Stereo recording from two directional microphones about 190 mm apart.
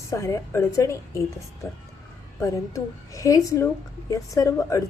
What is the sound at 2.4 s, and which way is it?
A woman's voice, 15° left (ahead or behind).